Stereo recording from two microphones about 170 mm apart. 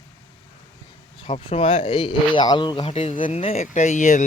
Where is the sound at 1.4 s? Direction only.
30° left (ahead or behind); by 4.2 s 45° left (ahead or behind).